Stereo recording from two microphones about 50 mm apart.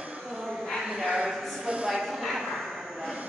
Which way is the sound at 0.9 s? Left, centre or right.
Centre.